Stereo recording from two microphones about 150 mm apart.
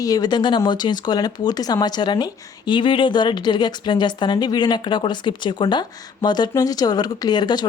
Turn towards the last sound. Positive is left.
turn(degrees=30)  # may be behind; listen again after turning